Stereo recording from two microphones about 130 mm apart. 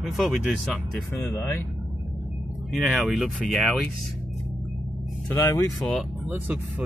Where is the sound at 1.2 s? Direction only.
20° left (ahead or behind).